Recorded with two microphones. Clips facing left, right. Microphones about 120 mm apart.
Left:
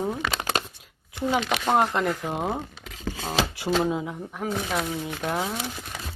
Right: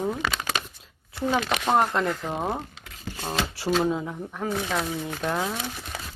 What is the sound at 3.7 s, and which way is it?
Speech, 10° left (ahead or behind).